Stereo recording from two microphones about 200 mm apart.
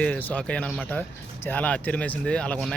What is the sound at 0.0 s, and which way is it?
Speech, 10° left (ahead or behind).